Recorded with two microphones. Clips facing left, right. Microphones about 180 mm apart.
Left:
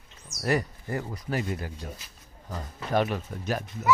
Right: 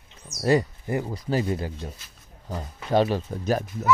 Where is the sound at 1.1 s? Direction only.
30° right (ahead or behind).